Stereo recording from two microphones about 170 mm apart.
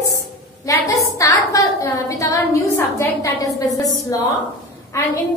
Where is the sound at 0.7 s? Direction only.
20° left (ahead or behind).